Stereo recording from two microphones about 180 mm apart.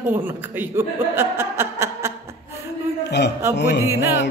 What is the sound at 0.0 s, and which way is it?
Speech, 10° right (ahead or behind).